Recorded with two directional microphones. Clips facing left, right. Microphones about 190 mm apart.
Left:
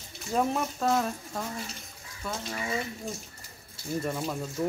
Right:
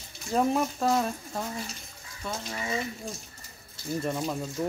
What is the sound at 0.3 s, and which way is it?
Speech, centre (ahead or behind).